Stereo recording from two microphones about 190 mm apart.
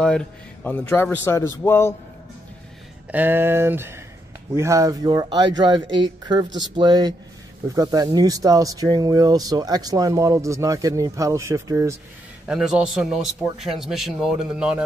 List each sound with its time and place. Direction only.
0.0 s a man's voice: 5° left (ahead or behind)
3.1 s speech: 10° right (ahead or behind)
12.4 s speech: 5° right (ahead or behind)